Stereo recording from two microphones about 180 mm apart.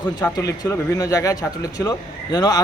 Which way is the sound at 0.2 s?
20° left (ahead or behind).